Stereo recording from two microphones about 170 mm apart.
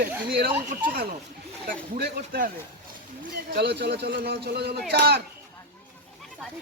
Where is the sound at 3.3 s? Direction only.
75° right (ahead or behind).